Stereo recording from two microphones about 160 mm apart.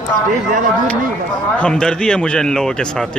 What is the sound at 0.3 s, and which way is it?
Speech, 55° right (ahead or behind).